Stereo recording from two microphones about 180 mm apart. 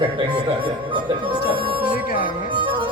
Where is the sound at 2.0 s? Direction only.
50° left (ahead or behind).